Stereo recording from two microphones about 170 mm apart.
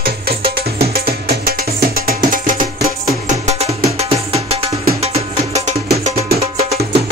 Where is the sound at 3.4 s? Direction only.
40° right (ahead or behind).